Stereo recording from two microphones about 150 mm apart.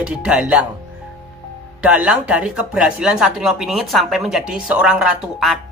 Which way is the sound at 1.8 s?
10° right (ahead or behind).